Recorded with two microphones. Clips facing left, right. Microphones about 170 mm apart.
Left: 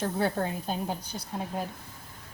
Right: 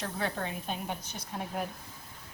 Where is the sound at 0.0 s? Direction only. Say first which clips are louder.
Left 6 dB; 35° left (ahead or behind).